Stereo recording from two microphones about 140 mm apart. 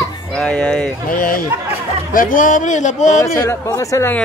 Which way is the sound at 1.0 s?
90° left.